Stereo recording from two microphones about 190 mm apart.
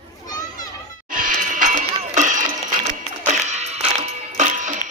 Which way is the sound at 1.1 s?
45° right (ahead or behind).